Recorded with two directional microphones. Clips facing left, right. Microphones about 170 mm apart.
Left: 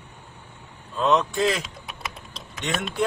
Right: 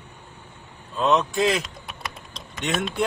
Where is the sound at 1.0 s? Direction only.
5° right (ahead or behind).